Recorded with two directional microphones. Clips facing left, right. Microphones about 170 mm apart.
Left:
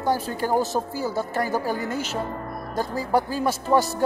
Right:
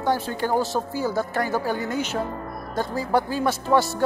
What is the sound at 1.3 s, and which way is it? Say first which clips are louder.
Speech: even; 35° left (ahead or behind).